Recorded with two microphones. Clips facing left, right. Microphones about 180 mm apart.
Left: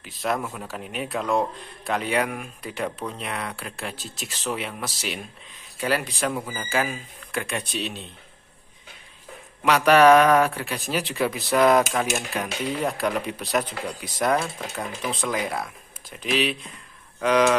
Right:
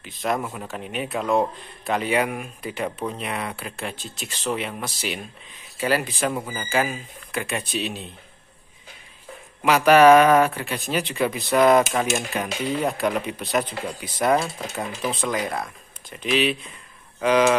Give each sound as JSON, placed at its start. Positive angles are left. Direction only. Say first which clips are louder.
{"t": 0.2, "sound": "speech", "louder": "right 1 dB", "side_deg": -5}
{"t": 9.6, "sound": "speech", "louder": "right 2 dB", "side_deg": -5}